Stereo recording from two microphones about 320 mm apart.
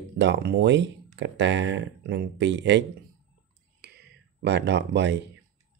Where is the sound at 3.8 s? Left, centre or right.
Right.